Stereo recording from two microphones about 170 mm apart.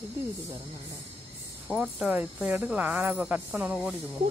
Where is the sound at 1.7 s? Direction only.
5° right (ahead or behind).